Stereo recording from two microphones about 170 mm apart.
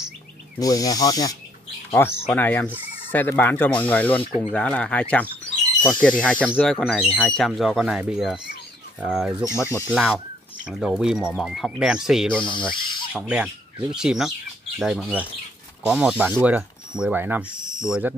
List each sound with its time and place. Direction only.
0.6 s speech: 20° left (ahead or behind); by 9.4 s 5° right (ahead or behind)
9.4 s speech: 15° left (ahead or behind)
9.8 s chicken: 5° right (ahead or behind)
10.8 s speech: 5° right (ahead or behind)
12.4 s speech: 30° left (ahead or behind)
12.7 s a sound: 30° left (ahead or behind)
13.1 s speech: 5° right (ahead or behind)